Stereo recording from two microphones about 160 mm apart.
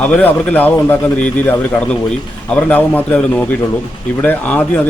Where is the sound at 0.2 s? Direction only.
10° left (ahead or behind).